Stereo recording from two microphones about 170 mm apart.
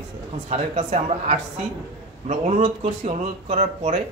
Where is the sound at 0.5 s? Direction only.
40° right (ahead or behind).